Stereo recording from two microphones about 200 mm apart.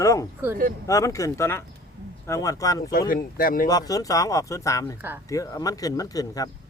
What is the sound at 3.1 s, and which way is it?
Speech, 45° left (ahead or behind).